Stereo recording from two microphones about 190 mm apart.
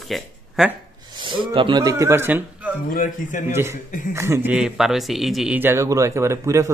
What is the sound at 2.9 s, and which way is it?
Speech, 45° left (ahead or behind).